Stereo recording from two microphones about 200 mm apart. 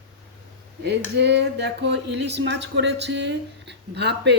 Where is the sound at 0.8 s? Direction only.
55° right (ahead or behind).